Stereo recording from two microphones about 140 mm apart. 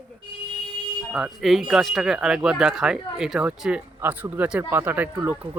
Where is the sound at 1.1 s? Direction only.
Centre (ahead or behind).